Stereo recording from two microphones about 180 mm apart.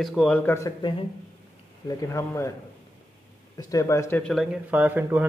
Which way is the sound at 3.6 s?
20° left (ahead or behind).